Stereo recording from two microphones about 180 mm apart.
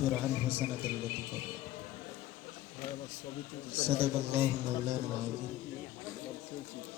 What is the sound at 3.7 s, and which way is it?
Speech, 30° right (ahead or behind).